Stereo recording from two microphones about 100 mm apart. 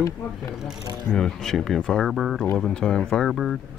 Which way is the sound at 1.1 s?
5° left (ahead or behind).